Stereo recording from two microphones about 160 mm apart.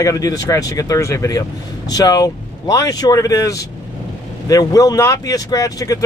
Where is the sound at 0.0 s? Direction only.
20° left (ahead or behind).